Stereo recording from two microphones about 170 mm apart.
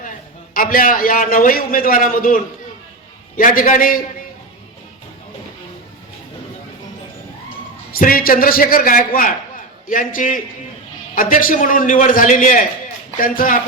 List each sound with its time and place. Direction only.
0.5 s a man's voice: 55° left (ahead or behind)
7.9 s a man's voice: 60° left (ahead or behind)